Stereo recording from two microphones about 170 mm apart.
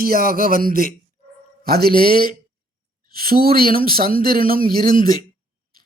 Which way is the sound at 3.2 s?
60° right (ahead or behind).